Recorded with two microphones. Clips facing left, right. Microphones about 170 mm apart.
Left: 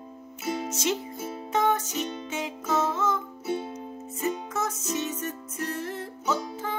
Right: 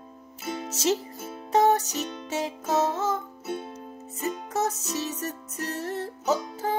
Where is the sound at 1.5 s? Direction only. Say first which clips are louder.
Right 4 dB; 40° right (ahead or behind).